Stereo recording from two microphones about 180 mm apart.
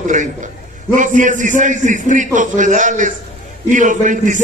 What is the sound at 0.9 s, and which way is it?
A man's voice, 45° right (ahead or behind).